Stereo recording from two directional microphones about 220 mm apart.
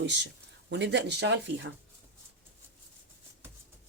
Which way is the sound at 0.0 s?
55° right (ahead or behind).